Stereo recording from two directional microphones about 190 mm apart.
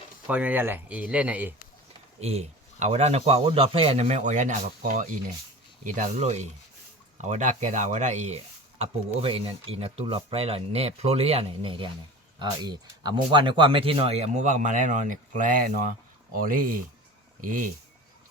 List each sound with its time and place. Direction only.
0.3 s speech: 10° right (ahead or behind)
2.2 s speech: 35° right (ahead or behind)